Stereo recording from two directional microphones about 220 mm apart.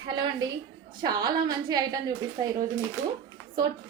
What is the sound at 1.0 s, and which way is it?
A woman's voice, 20° right (ahead or behind).